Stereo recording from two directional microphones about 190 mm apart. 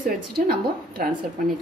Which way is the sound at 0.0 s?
55° right (ahead or behind).